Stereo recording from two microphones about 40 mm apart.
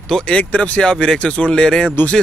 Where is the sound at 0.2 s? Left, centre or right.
Left.